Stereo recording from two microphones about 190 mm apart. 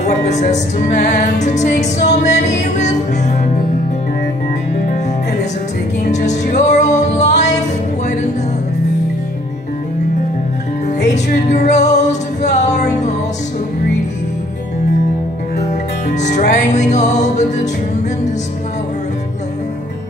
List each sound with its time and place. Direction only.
0.0 s music: 35° left (ahead or behind)
6.0 s music: 40° left (ahead or behind)
11.2 s music: 40° left (ahead or behind)
16.2 s music: 40° left (ahead or behind)